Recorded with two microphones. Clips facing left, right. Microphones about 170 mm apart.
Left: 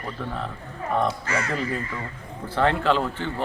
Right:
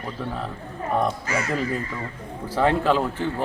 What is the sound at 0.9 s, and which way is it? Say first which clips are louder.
Speech: right 1 dB; 10° right (ahead or behind).